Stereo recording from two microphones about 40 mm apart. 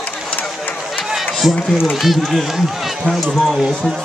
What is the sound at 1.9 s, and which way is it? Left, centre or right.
Speech, centre.